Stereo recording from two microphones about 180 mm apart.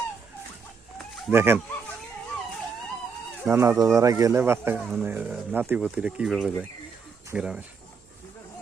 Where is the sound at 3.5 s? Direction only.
15° right (ahead or behind).